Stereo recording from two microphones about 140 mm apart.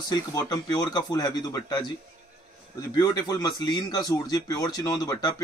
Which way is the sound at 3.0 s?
25° left (ahead or behind).